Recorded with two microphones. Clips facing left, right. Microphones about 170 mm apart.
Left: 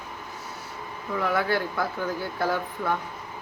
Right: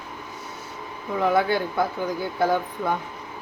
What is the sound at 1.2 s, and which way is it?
Speech, 20° right (ahead or behind).